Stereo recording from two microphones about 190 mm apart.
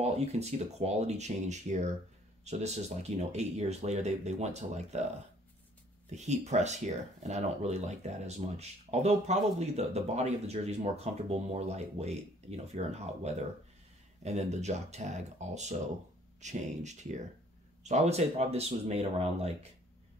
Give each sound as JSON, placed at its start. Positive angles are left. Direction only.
{"t": 0.0, "sound": "speech", "side_deg": -35}
{"t": 6.0, "sound": "speech", "side_deg": -35}